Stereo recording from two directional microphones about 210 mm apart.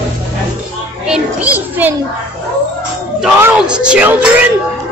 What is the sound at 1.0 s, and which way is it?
Children playing, 5° right (ahead or behind).